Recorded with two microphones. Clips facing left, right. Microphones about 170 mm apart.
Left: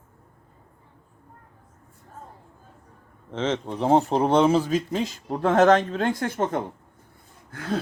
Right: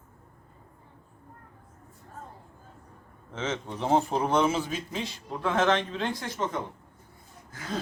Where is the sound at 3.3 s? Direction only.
30° left (ahead or behind); by 6.6 s 55° left (ahead or behind).